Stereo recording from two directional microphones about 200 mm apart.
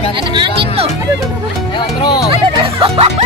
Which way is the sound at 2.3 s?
25° right (ahead or behind).